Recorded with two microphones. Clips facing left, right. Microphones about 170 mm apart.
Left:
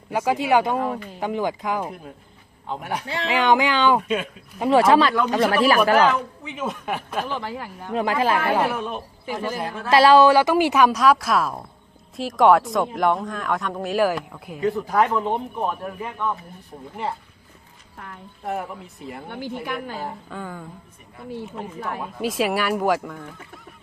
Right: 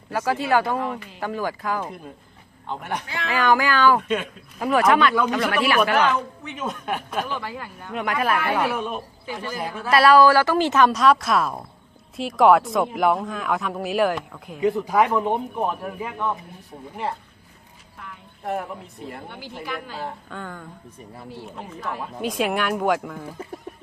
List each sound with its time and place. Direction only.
0.1 s speech: 15° left (ahead or behind)
2.6 s speech: 5° left (ahead or behind)
3.2 s speech: 20° left (ahead or behind); by 6.1 s 35° left (ahead or behind)
6.4 s speech: 5° left (ahead or behind)
7.3 s speech: 20° left (ahead or behind)
8.7 s speech: centre (ahead or behind)
9.9 s speech: 25° left (ahead or behind); by 14.6 s 5° left (ahead or behind)
14.6 s speech: 20° right (ahead or behind)
17.9 s a sound: 50° left (ahead or behind)
18.4 s speech: centre (ahead or behind)
19.3 s a woman's voice: 55° left (ahead or behind)
20.0 s speech: 5° left (ahead or behind)
21.8 s speech: 55° left (ahead or behind)
22.0 s speech: 5° left (ahead or behind)